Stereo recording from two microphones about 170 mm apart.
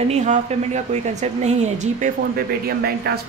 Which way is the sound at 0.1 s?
45° right (ahead or behind).